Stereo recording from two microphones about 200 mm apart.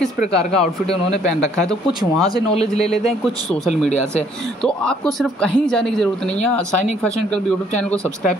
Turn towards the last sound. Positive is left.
turn(degrees=5)  # may be behind; listen again after turning